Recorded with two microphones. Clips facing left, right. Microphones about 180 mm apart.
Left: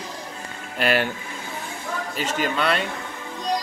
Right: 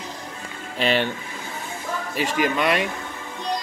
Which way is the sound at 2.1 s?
10° right (ahead or behind).